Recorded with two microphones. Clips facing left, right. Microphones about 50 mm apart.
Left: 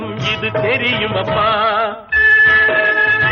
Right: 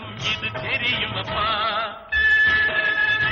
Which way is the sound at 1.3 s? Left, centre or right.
Left.